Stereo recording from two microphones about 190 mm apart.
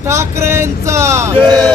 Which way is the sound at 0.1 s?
15° right (ahead or behind).